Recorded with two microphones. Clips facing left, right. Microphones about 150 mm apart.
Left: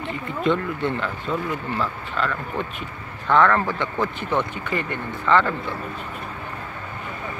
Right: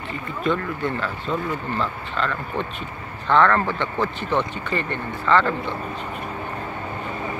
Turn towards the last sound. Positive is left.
turn(degrees=15)  # may be behind; listen again after turning